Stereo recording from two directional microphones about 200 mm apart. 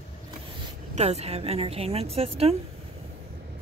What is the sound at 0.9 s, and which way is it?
A woman's voice, 30° right (ahead or behind).